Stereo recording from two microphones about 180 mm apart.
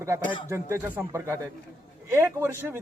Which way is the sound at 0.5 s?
15° right (ahead or behind).